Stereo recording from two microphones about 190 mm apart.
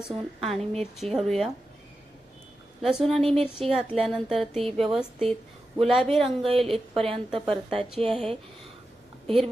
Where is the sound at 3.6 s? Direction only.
5° left (ahead or behind).